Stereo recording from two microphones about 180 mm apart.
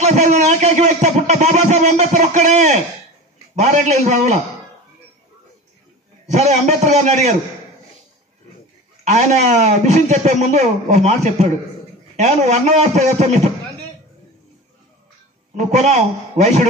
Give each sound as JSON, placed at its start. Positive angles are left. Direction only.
{"t": 0.0, "sound": "speech", "side_deg": -40}
{"t": 6.2, "sound": "speech", "side_deg": -40}
{"t": 9.0, "sound": "speech", "side_deg": -40}
{"t": 15.5, "sound": "speech", "side_deg": -40}